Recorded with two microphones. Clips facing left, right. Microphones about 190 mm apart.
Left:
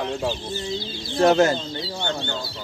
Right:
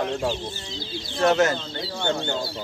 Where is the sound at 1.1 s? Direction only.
30° left (ahead or behind).